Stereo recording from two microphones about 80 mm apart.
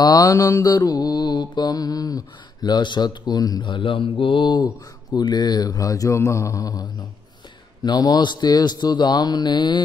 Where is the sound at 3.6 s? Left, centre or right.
Left.